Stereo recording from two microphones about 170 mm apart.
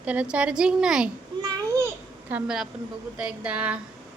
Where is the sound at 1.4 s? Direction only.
20° right (ahead or behind).